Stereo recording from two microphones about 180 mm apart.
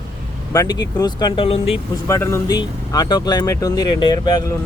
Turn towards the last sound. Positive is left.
turn(degrees=25)  # may be behind; listen again after turning